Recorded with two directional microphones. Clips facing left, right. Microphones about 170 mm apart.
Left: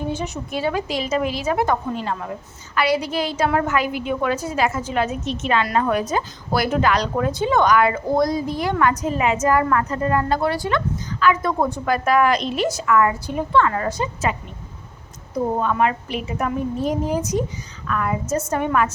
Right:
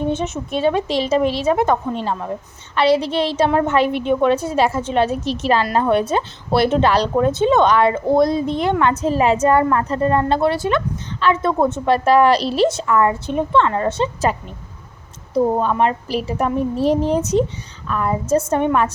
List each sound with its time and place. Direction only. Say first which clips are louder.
0.1 s a woman's voice: right 4 dB; 25° right (ahead or behind)
15.6 s a woman's voice: right 2 dB; 30° right (ahead or behind)